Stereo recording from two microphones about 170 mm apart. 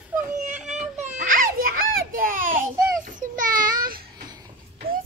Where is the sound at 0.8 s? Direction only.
45° right (ahead or behind).